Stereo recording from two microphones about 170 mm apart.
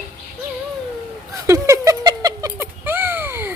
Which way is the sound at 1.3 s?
20° right (ahead or behind).